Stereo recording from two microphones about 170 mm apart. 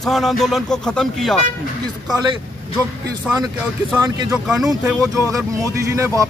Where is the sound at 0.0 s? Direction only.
Centre (ahead or behind).